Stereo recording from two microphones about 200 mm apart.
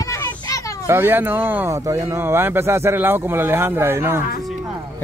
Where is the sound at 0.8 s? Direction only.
10° right (ahead or behind).